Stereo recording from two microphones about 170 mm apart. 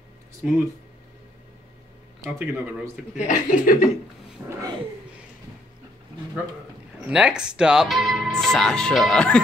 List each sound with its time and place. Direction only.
0.4 s speech: 5° right (ahead or behind)
2.2 s speech: 10° right (ahead or behind)
3.2 s speech: 50° left (ahead or behind)
4.5 s speech: 20° right (ahead or behind)
7.1 s speech: 5° right (ahead or behind)